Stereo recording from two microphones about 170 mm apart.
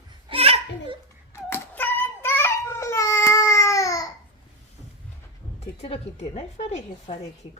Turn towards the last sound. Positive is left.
turn(degrees=40)  # may be behind; listen again after turning